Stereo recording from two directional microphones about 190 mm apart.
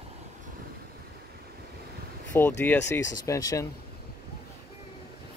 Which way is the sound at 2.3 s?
10° left (ahead or behind).